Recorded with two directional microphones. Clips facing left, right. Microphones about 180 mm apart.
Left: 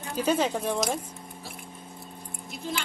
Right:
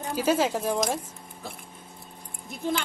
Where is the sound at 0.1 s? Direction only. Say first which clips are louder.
Right 1 dB; 5° right (ahead or behind).